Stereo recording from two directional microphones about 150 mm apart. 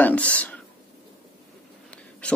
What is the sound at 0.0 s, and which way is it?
Speech, 10° left (ahead or behind).